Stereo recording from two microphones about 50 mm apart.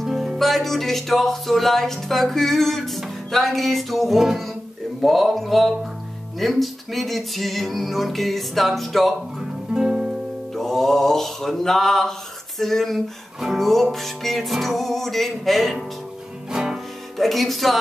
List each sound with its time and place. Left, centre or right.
0.0 s music: centre
9.4 s music: centre
10.5 s mantra: centre
13.4 s music: centre
16.5 s music: centre
17.2 s music: centre